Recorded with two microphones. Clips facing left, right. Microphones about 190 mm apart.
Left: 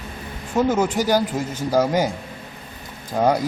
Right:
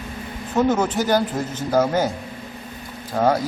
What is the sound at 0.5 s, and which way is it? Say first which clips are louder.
Speech: even; 10° left (ahead or behind).